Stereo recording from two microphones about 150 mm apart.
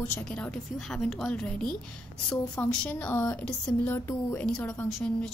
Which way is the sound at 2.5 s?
5° left (ahead or behind).